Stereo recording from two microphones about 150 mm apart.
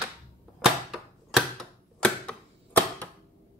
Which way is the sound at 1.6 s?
5° left (ahead or behind).